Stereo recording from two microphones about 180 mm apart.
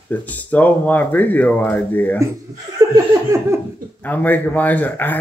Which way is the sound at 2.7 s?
20° right (ahead or behind).